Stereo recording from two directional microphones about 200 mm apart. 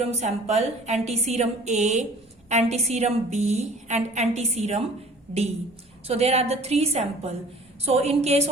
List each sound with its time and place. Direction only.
0.0 s a woman's voice: 35° right (ahead or behind)
6.1 s a woman's voice: 30° right (ahead or behind)